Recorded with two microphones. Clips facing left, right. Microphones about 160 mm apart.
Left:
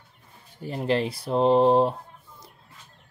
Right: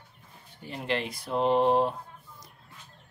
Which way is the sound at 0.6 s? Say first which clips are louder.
Left 6 dB; 35° left (ahead or behind).